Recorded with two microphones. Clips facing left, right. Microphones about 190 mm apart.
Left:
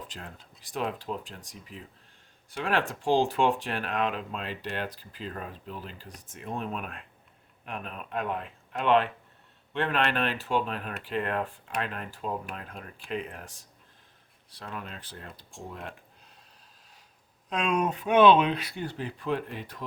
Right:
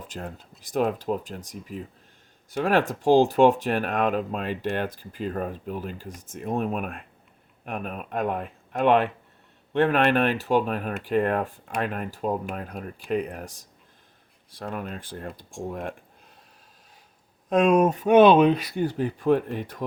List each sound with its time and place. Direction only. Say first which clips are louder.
0.7 s speech: right 8 dB; 45° right (ahead or behind)
17.5 s speech: right 9 dB; 45° right (ahead or behind)